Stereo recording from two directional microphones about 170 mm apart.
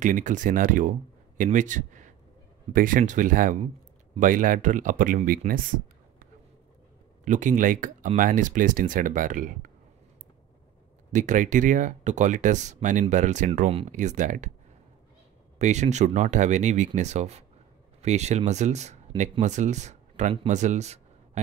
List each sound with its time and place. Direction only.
0.0 s speech: 50° right (ahead or behind)
7.2 s speech: 45° right (ahead or behind)
11.1 s speech: 45° right (ahead or behind)
15.6 s speech: 40° right (ahead or behind)